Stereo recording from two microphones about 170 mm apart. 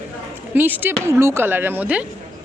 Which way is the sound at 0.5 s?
10° right (ahead or behind).